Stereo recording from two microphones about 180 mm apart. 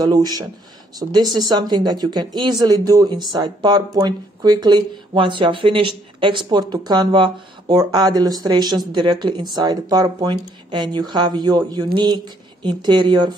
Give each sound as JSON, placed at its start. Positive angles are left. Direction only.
{"t": 0.0, "sound": "speech", "side_deg": -20}